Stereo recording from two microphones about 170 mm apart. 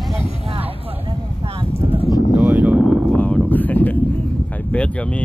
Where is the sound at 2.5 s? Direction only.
10° right (ahead or behind).